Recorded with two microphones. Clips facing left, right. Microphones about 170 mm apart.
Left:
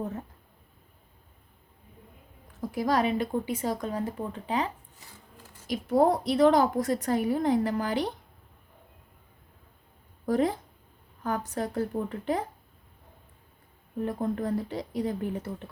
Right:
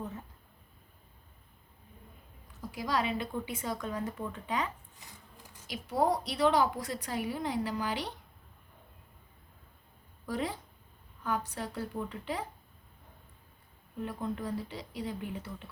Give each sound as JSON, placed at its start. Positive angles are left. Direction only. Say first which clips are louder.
{"t": 2.6, "sound": "speech", "louder": "left 7 dB", "side_deg": 50}
{"t": 5.6, "sound": "a woman's voice", "louder": "left 7 dB", "side_deg": 50}
{"t": 10.2, "sound": "a woman's voice", "louder": "left 9 dB", "side_deg": 50}
{"t": 14.0, "sound": "a woman's voice", "louder": "left 6 dB", "side_deg": 50}